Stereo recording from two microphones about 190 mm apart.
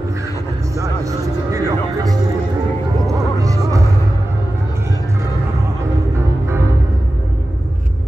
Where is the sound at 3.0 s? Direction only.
15° right (ahead or behind).